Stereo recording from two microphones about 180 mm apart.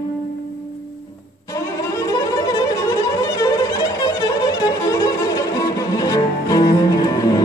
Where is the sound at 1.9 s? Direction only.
20° left (ahead or behind).